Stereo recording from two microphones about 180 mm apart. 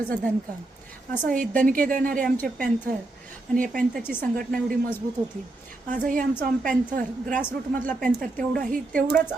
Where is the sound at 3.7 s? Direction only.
5° left (ahead or behind).